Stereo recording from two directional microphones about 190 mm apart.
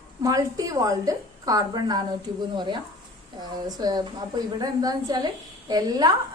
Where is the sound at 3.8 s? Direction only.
20° right (ahead or behind).